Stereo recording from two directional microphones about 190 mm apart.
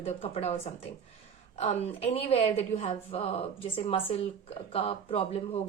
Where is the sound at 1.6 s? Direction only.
35° left (ahead or behind).